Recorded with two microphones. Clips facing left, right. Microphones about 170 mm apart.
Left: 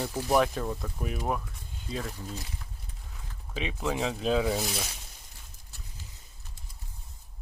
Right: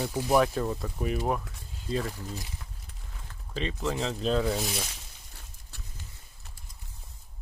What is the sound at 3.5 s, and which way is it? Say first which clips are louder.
Speech: even; 5° left (ahead or behind).